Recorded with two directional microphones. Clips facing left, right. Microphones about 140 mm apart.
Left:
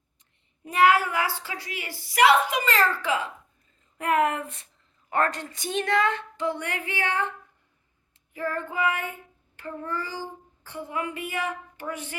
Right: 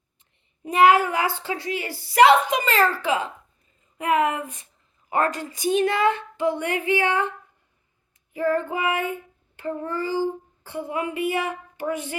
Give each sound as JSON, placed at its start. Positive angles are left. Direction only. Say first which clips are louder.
{"t": 0.6, "sound": "speech", "louder": "right 4 dB", "side_deg": -15}
{"t": 3.9, "sound": "speech", "louder": "right 2 dB", "side_deg": 0}
{"t": 8.3, "sound": "speech", "louder": "right 8 dB", "side_deg": -15}